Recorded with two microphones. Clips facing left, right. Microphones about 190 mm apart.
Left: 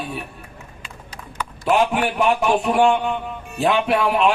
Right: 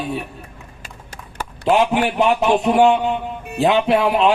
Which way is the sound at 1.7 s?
20° right (ahead or behind).